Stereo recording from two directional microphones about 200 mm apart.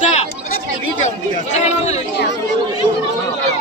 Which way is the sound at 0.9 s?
35° left (ahead or behind).